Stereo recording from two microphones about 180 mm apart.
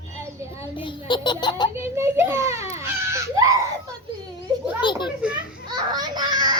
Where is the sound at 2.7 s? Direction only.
15° right (ahead or behind).